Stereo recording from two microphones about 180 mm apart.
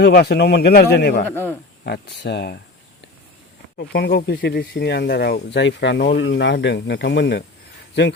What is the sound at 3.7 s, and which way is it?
Speech, 65° left (ahead or behind).